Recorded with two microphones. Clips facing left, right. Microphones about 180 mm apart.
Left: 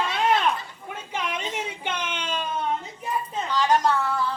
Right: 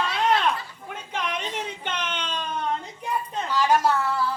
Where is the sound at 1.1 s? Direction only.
10° left (ahead or behind).